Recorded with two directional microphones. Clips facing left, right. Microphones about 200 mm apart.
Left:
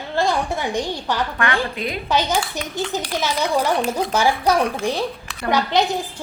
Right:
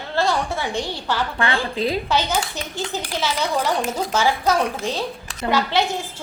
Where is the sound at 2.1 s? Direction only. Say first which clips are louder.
Left 1 dB; 10° left (ahead or behind).